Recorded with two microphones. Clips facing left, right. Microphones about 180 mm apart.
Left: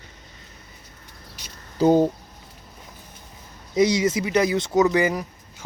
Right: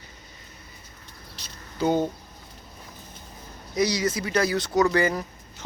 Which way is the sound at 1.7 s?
35° left (ahead or behind).